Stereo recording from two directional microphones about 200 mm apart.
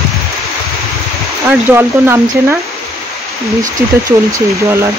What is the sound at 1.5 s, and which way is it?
Speech, 10° right (ahead or behind).